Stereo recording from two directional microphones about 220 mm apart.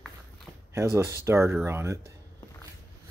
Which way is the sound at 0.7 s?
10° right (ahead or behind).